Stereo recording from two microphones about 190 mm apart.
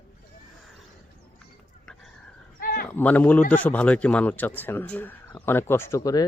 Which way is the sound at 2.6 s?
50° left (ahead or behind).